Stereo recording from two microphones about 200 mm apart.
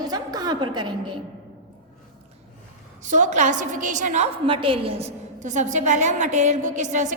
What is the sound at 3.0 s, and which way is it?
A woman's voice, 40° right (ahead or behind).